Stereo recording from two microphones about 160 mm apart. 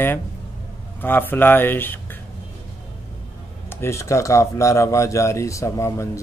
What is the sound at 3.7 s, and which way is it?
Speech, 15° left (ahead or behind).